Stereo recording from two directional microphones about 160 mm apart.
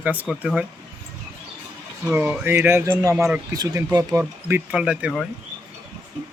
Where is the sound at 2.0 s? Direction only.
10° right (ahead or behind).